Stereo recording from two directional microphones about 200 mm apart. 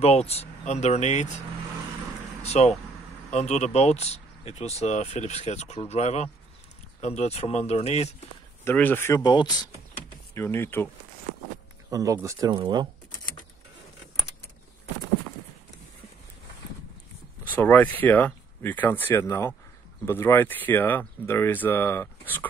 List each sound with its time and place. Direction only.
0.0 s speech: 30° left (ahead or behind)
2.4 s speech: 35° left (ahead or behind)
8.6 s speech: 10° left (ahead or behind)
11.9 s speech: 15° right (ahead or behind)
17.5 s speech: 10° left (ahead or behind)